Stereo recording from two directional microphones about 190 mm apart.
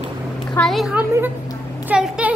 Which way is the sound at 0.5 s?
Centre (ahead or behind).